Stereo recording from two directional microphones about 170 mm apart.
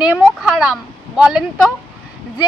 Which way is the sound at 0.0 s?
5° right (ahead or behind).